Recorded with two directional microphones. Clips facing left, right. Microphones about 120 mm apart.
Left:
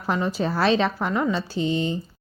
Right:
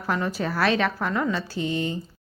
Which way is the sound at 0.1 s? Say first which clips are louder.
Left 2 dB; 20° left (ahead or behind).